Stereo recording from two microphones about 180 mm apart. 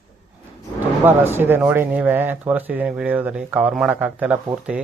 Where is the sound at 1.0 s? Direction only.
10° right (ahead or behind).